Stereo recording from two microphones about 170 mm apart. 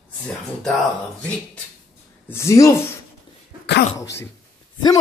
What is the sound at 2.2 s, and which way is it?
Speech, 15° left (ahead or behind).